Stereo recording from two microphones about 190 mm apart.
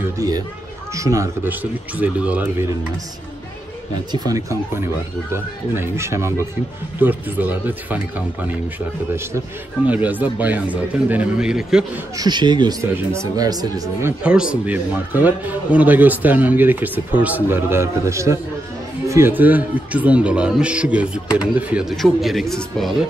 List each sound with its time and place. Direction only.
0.2 s a man's voice: 20° right (ahead or behind)
4.1 s a man's voice: 20° right (ahead or behind); by 11.8 s 5° right (ahead or behind)
12.2 s a man's voice: 25° right (ahead or behind)
14.2 s a man's voice: 5° right (ahead or behind)